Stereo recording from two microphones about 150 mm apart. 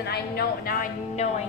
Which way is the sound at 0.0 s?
90° left.